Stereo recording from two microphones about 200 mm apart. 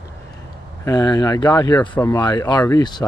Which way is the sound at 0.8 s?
20° left (ahead or behind).